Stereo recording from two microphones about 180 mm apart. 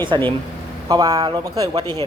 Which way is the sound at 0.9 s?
20° right (ahead or behind).